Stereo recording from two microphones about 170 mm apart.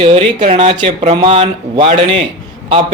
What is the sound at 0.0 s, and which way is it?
Speech, 35° right (ahead or behind).